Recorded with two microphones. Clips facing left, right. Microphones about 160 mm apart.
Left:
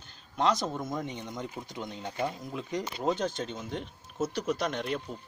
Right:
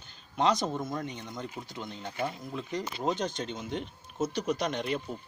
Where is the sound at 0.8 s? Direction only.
15° left (ahead or behind); by 5.0 s centre (ahead or behind).